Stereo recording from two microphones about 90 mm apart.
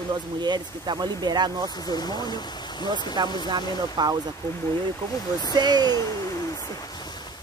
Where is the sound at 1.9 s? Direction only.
50° left (ahead or behind).